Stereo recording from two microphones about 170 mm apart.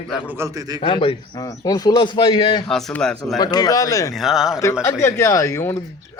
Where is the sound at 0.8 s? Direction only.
30° left (ahead or behind).